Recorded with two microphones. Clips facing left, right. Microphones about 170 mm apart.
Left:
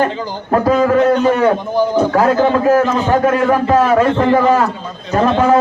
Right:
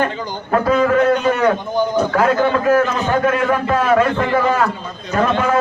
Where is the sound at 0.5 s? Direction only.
35° left (ahead or behind).